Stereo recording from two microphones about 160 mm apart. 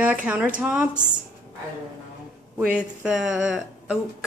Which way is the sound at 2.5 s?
5° right (ahead or behind).